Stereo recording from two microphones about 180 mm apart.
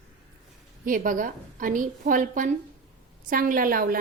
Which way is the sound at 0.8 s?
50° right (ahead or behind).